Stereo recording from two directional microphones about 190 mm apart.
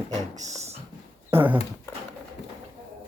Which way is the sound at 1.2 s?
10° right (ahead or behind).